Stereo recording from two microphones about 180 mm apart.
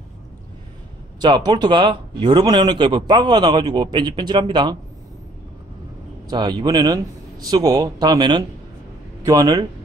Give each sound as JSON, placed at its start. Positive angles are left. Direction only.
{"t": 1.2, "sound": "speech", "side_deg": -25}
{"t": 6.2, "sound": "speech", "side_deg": -25}